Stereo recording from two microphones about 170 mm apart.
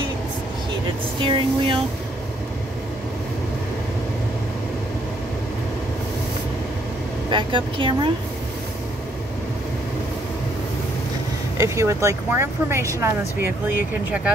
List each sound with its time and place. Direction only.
1.2 s speech: 30° right (ahead or behind)
7.2 s speech: 30° right (ahead or behind)
11.5 s speech: 15° right (ahead or behind)